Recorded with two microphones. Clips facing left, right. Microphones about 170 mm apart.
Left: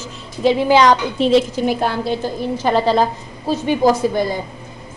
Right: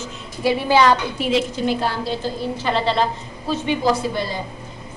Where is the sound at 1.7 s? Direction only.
55° left (ahead or behind).